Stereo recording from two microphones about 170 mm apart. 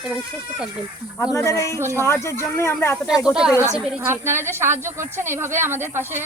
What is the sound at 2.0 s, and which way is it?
Speech, 15° left (ahead or behind).